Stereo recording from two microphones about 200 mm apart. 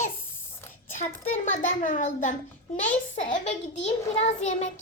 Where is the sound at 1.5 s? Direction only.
40° left (ahead or behind).